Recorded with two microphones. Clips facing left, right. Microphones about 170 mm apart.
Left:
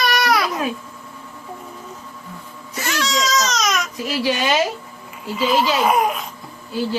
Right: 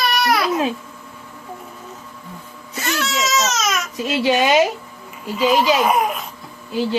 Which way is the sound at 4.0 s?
25° right (ahead or behind).